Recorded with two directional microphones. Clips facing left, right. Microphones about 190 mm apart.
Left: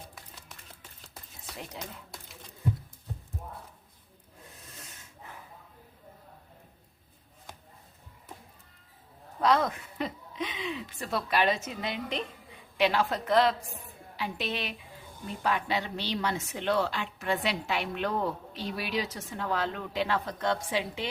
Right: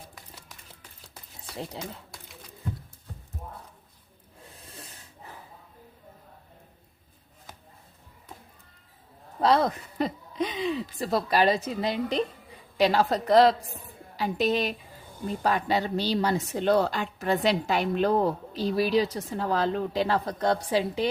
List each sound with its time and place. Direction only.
1.8 s speech: 30° right (ahead or behind)
4.5 s snake: 30° right (ahead or behind)
9.4 s speech: 35° right (ahead or behind)